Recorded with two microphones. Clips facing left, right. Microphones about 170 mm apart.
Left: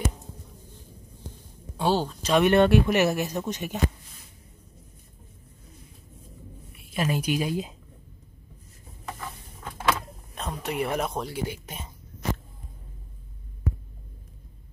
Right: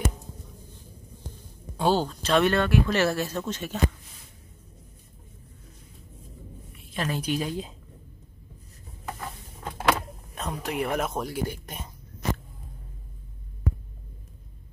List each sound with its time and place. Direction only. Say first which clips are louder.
1.8 s speech: right 1 dB; 5° left (ahead or behind)
2.5 s speech: left 4 dB; 20° left (ahead or behind)
6.9 s speech: left 2 dB; 10° left (ahead or behind)
10.3 s speech: even; centre (ahead or behind)